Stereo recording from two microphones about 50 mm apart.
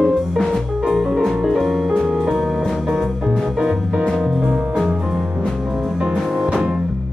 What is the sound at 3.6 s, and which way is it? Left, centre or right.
Music, centre.